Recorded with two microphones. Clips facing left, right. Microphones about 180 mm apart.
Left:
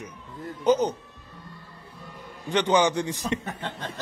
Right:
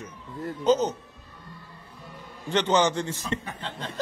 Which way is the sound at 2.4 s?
15° left (ahead or behind).